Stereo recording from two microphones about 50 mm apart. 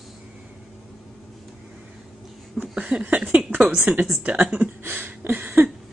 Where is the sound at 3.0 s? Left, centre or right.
Right.